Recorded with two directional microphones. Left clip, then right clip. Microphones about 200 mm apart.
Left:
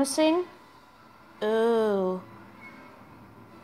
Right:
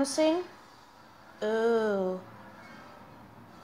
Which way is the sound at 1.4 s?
15° left (ahead or behind).